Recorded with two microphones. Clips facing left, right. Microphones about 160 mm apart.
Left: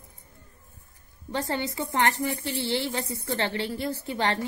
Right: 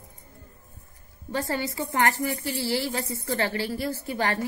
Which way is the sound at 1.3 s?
20° left (ahead or behind).